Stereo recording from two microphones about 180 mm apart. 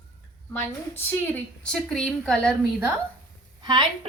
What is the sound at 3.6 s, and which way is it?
Speech, 25° right (ahead or behind).